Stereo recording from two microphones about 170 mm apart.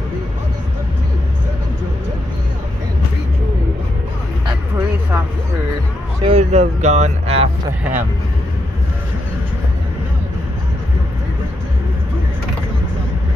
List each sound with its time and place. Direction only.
6.2 s speech: 40° right (ahead or behind)
7.8 s speech: 10° right (ahead or behind)